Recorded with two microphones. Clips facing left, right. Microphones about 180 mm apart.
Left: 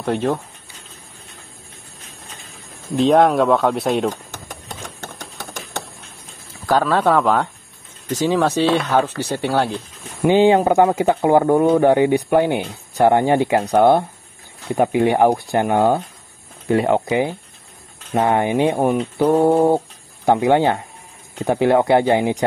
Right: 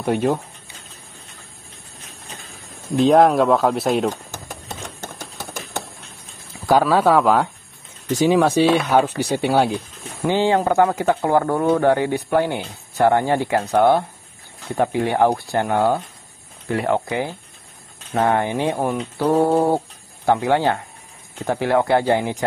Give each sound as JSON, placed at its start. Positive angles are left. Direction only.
{"t": 0.0, "sound": "speech", "side_deg": -10}
{"t": 3.0, "sound": "a sound", "side_deg": 0}
{"t": 6.6, "sound": "speech", "side_deg": -10}
{"t": 10.2, "sound": "speech", "side_deg": 15}